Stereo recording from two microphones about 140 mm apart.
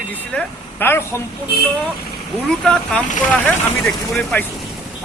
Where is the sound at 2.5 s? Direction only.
5° left (ahead or behind).